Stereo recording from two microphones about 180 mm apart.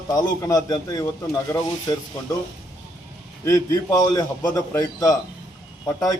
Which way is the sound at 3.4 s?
20° left (ahead or behind).